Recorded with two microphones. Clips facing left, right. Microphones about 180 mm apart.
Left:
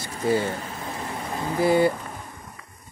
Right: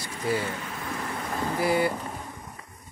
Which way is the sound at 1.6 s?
25° left (ahead or behind).